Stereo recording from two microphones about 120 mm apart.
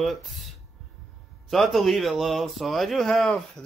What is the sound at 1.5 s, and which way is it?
Speech, centre (ahead or behind).